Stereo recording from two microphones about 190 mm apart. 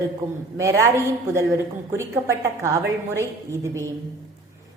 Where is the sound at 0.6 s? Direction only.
15° right (ahead or behind).